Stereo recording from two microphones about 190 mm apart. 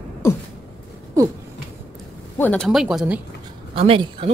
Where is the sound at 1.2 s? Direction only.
15° right (ahead or behind).